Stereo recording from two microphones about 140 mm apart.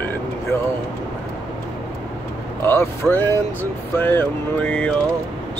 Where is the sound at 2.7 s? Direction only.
15° left (ahead or behind).